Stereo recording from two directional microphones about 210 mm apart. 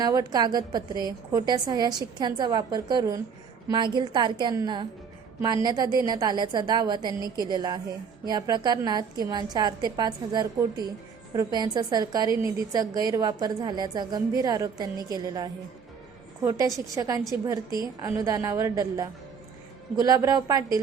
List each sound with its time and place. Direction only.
0.0 s a woman's voice: 15° right (ahead or behind)